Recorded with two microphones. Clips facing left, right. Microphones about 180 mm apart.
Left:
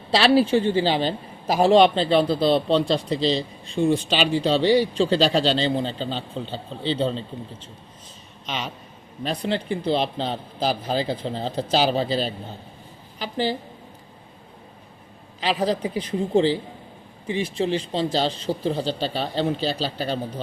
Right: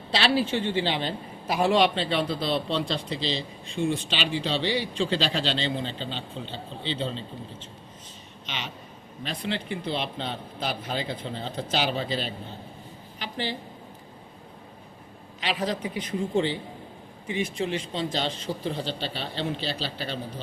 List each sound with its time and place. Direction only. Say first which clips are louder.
0.1 s a man's voice: left 7 dB; 40° left (ahead or behind)
15.4 s a man's voice: left 6 dB; 35° left (ahead or behind)